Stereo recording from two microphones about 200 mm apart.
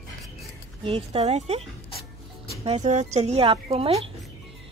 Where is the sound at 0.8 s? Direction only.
30° right (ahead or behind).